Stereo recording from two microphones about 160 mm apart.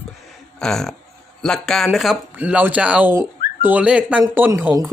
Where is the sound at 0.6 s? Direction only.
5° left (ahead or behind).